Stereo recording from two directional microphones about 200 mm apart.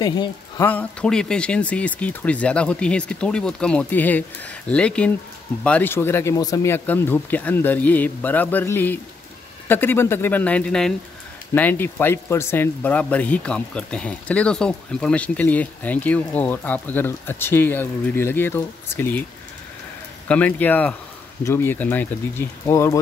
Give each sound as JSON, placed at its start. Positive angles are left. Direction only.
{"t": 0.0, "sound": "speech", "side_deg": 20}
{"t": 0.7, "sound": "speech", "side_deg": 5}
{"t": 20.2, "sound": "speech", "side_deg": 5}